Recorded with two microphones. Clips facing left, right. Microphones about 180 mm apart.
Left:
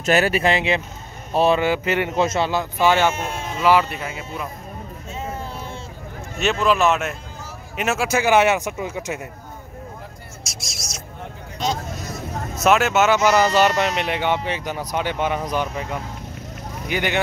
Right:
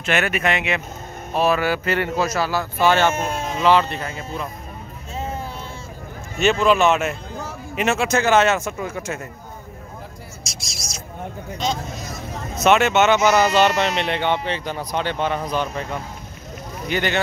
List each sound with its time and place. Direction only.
0.0 s speech: 35° left (ahead or behind); by 3.2 s 15° left (ahead or behind)
3.2 s speech: 45° right (ahead or behind)
3.6 s speech: 10° left (ahead or behind)
6.3 s speech: centre (ahead or behind); by 9.2 s 15° left (ahead or behind)
10.4 s a sound: centre (ahead or behind)
12.6 s speech: centre (ahead or behind)